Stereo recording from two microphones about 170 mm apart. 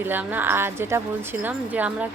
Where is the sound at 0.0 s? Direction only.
10° right (ahead or behind).